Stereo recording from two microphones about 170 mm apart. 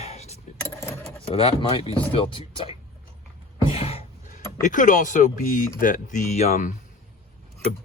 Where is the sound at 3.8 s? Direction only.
35° left (ahead or behind).